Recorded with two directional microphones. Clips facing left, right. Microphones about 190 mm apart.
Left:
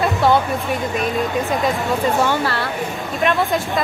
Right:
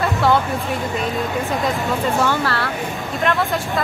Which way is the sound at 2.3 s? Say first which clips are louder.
Left 1 dB; 15° left (ahead or behind).